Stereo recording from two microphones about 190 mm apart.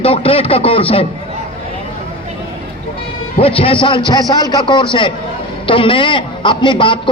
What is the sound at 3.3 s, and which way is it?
A man's voice, 30° left (ahead or behind).